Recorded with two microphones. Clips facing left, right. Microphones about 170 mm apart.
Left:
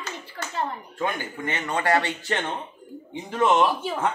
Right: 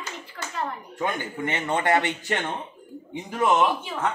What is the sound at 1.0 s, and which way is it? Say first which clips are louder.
A man's voice: right 1 dB; 25° right (ahead or behind).